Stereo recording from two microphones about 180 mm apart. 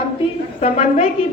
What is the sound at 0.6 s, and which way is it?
Speech, 35° left (ahead or behind).